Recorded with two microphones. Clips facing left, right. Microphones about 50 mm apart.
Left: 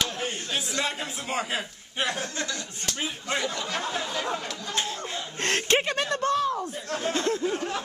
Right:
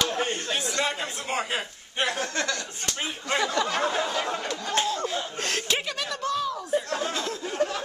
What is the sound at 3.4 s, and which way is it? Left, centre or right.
Speech, right.